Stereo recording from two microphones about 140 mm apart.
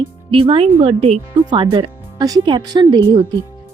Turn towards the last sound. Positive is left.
turn(degrees=-35)  # may be behind; listen again after turning